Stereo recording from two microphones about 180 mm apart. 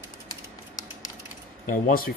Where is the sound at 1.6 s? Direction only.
50° left (ahead or behind).